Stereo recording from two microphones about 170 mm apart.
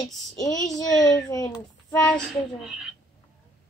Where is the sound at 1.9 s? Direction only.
5° left (ahead or behind).